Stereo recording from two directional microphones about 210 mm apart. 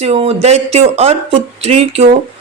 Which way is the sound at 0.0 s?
30° right (ahead or behind).